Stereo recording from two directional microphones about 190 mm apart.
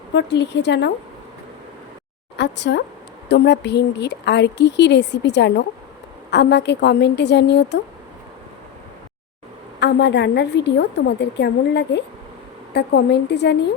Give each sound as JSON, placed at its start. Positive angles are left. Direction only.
{"t": 0.1, "sound": "speech", "side_deg": 65}
{"t": 2.3, "sound": "speech", "side_deg": 65}
{"t": 9.8, "sound": "speech", "side_deg": 65}